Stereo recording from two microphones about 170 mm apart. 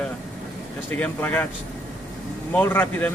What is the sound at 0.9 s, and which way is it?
Speech, 10° left (ahead or behind).